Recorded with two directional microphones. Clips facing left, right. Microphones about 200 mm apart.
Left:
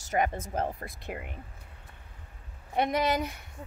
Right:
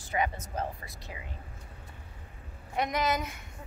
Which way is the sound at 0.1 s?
50° left (ahead or behind).